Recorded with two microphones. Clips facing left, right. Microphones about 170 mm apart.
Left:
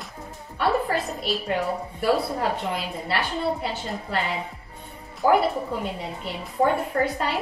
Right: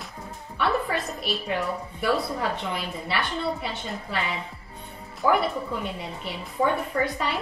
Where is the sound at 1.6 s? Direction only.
30° left (ahead or behind).